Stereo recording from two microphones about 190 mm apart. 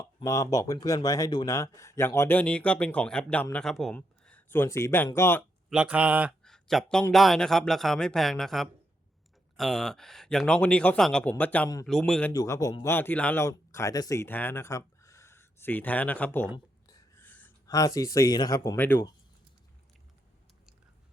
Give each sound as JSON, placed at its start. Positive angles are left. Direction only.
{"t": 0.0, "sound": "speech", "side_deg": 20}
{"t": 5.4, "sound": "speech", "side_deg": -5}
{"t": 6.4, "sound": "a sound", "side_deg": 0}
{"t": 7.1, "sound": "speech", "side_deg": 0}
{"t": 12.3, "sound": "speech", "side_deg": 20}